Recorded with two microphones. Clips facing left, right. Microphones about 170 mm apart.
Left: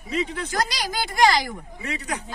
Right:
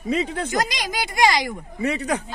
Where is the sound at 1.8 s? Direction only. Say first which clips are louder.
Right 8 dB; 60° right (ahead or behind).